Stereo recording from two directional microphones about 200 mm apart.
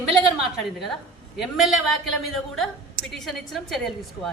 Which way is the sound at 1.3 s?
Centre (ahead or behind).